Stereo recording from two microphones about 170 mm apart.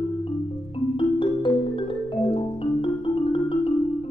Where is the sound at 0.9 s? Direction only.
30° left (ahead or behind).